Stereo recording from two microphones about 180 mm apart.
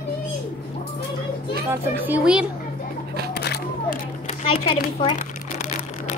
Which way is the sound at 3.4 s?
65° left (ahead or behind).